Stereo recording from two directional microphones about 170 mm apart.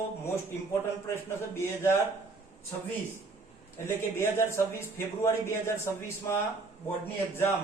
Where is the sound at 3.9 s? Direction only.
15° left (ahead or behind).